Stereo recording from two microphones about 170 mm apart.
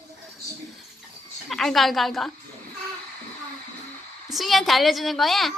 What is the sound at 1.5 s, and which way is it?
Speech, centre (ahead or behind).